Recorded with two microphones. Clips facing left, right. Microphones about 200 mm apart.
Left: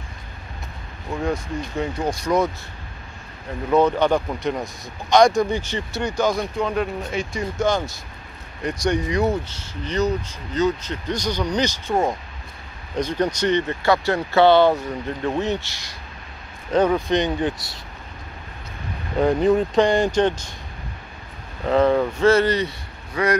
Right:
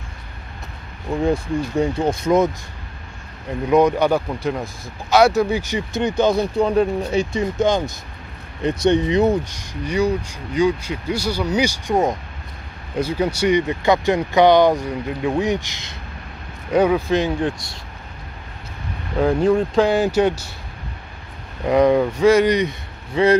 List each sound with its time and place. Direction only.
1.2 s speech: 30° right (ahead or behind)
3.7 s speech: 10° right (ahead or behind)
4.3 s speech: centre (ahead or behind); by 7.4 s 30° right (ahead or behind)
7.5 s speech: 20° right (ahead or behind); by 17.6 s centre (ahead or behind)
19.1 s speech: centre (ahead or behind)
21.6 s speech: 15° right (ahead or behind)